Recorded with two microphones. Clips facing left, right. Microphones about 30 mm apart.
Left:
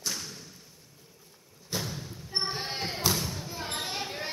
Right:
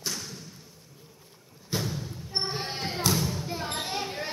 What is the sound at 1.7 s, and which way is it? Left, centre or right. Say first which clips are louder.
Thump: right 3 dB; centre.